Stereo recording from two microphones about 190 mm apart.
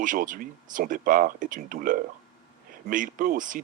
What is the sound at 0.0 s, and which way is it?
A man's voice, 45° right (ahead or behind).